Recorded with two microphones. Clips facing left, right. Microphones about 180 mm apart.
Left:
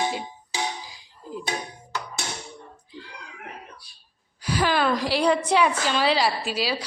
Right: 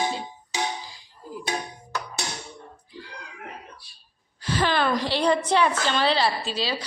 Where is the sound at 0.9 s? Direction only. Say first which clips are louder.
Left 1 dB; 20° left (ahead or behind).